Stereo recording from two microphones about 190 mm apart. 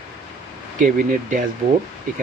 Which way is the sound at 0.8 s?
45° right (ahead or behind).